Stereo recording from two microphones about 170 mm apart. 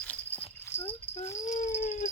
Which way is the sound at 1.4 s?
45° left (ahead or behind).